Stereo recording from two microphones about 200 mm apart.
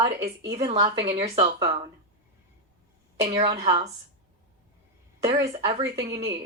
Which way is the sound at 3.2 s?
20° right (ahead or behind).